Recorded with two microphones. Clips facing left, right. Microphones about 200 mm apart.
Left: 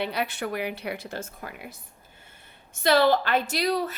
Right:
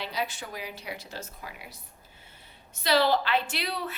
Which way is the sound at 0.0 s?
60° left (ahead or behind).